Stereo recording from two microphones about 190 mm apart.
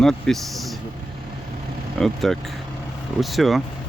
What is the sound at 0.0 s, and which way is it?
Speech, centre (ahead or behind).